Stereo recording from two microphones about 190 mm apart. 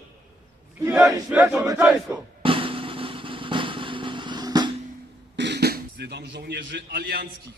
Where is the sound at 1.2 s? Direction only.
5° right (ahead or behind).